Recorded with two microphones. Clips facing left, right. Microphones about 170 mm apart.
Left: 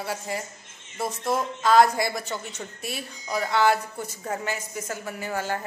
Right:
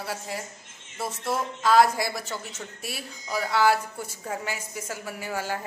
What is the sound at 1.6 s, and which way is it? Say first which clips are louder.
Speech: left 1 dB; 5° right (ahead or behind).